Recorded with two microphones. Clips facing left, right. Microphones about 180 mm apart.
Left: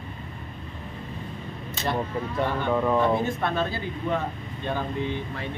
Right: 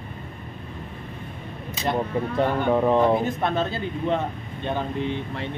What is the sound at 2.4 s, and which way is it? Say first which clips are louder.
Speech: right 4 dB; 20° right (ahead or behind).